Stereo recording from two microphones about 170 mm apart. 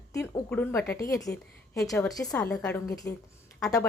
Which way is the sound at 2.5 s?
10° left (ahead or behind).